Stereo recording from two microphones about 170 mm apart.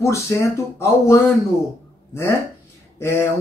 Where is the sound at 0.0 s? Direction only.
15° left (ahead or behind).